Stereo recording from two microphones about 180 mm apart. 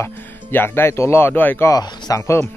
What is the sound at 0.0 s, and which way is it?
Speech, 10° left (ahead or behind).